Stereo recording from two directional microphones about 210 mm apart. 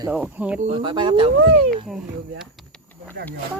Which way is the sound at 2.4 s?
Centre (ahead or behind).